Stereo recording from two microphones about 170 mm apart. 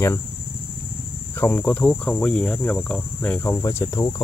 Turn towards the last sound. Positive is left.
turn(degrees=15)  # may be behind; listen again after turning